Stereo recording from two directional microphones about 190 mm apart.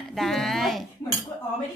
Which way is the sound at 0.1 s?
Centre (ahead or behind).